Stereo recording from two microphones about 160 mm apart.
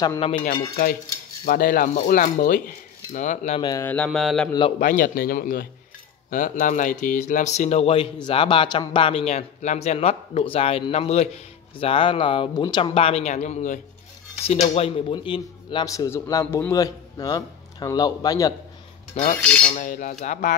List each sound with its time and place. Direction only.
0.2 s cutlery: 45° left (ahead or behind)
1.4 s speech: 60° left (ahead or behind)
3.1 s cutlery: 50° left (ahead or behind)
3.8 s mantra: 10° left (ahead or behind)
4.5 s speech: 30° left (ahead or behind)
4.7 s speech: 55° left (ahead or behind); by 18.5 s 25° left (ahead or behind)
19.6 s cutlery: 55° left (ahead or behind)